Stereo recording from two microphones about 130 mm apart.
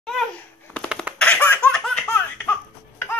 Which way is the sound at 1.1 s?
10° left (ahead or behind).